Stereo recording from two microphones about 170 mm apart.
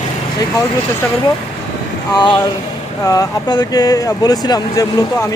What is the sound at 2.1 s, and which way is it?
Speech, 25° left (ahead or behind).